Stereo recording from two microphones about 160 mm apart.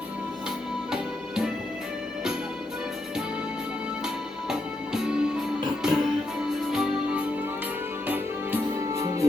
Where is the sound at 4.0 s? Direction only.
5° right (ahead or behind).